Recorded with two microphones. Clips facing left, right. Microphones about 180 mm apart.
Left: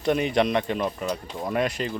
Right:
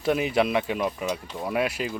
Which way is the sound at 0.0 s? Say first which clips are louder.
Left 1 dB; 5° right (ahead or behind).